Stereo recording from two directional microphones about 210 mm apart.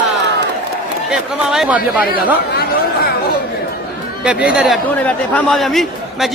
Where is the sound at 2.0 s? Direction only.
45° left (ahead or behind).